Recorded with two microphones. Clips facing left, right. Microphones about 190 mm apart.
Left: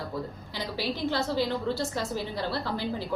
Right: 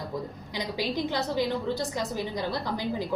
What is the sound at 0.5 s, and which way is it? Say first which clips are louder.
A woman's voice: right 2 dB; 15° right (ahead or behind).